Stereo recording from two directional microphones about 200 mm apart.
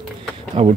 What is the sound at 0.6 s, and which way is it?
Speech, 30° right (ahead or behind).